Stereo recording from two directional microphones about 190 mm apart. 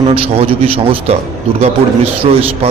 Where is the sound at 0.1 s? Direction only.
30° right (ahead or behind).